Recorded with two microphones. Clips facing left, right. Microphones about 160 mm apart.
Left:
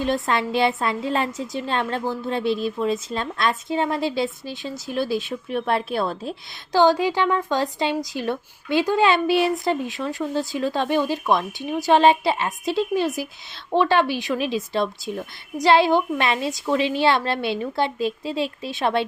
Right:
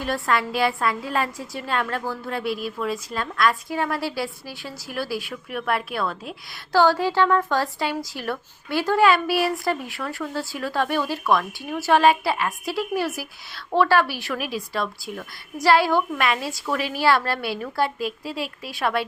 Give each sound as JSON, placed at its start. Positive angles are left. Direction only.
{"t": 0.0, "sound": "a woman's voice", "side_deg": 20}
{"t": 6.7, "sound": "a woman's voice", "side_deg": 15}